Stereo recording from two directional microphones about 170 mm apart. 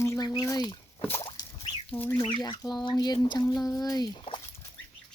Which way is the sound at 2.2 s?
25° left (ahead or behind).